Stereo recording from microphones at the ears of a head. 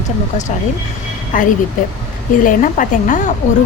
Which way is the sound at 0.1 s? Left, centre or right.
Left.